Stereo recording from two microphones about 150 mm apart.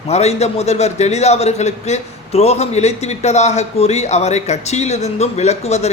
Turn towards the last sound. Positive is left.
turn(degrees=45)  # may be behind; listen again after turning